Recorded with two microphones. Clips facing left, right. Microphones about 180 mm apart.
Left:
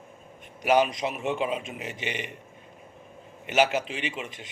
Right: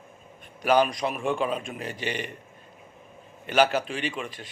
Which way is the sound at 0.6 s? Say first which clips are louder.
Right 1 dB; 20° left (ahead or behind).